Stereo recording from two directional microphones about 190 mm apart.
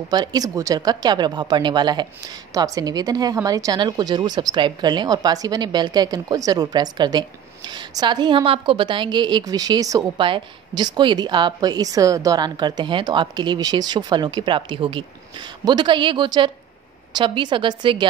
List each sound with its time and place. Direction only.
0.1 s a woman's voice: 20° right (ahead or behind)